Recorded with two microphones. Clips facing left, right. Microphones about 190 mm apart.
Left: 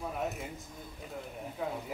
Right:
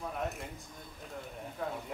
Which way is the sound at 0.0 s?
5° left (ahead or behind).